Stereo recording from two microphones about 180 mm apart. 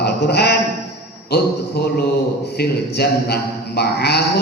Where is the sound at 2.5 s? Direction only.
60° left (ahead or behind).